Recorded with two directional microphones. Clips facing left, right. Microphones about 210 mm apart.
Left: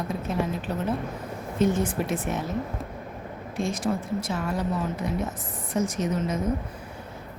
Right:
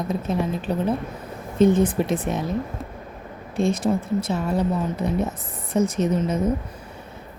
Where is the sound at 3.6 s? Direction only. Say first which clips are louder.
Right 6 dB; 60° right (ahead or behind).